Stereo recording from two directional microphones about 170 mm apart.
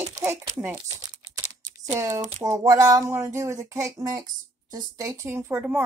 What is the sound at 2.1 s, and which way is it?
Speech, 40° right (ahead or behind).